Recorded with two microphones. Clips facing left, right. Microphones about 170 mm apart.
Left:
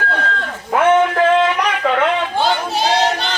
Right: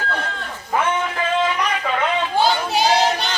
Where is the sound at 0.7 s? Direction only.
65° left (ahead or behind).